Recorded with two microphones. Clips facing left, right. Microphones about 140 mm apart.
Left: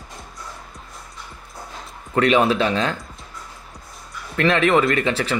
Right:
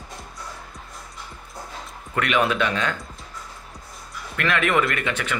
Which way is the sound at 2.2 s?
30° left (ahead or behind).